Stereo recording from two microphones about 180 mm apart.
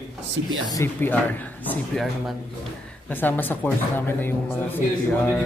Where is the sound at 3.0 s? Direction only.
10° left (ahead or behind).